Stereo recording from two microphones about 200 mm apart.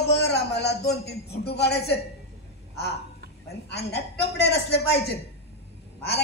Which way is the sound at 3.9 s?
55° left (ahead or behind).